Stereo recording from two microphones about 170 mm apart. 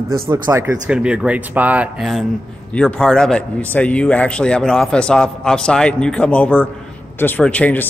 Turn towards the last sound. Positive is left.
turn(degrees=10)  # may be behind; listen again after turning